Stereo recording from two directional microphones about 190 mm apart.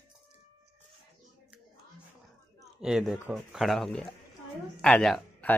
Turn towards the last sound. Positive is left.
turn(degrees=5)  # may be behind; listen again after turning